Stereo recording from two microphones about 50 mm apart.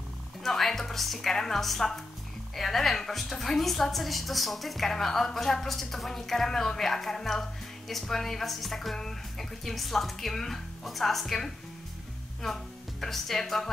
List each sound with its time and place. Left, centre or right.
0.4 s a woman's voice: centre